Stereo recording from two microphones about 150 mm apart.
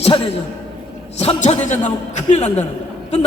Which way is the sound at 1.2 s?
45° left (ahead or behind).